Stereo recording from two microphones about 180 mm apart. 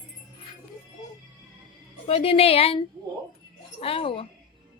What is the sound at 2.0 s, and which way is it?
A woman's voice, 35° left (ahead or behind).